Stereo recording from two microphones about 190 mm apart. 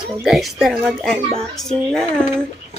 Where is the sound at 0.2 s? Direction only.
Centre (ahead or behind).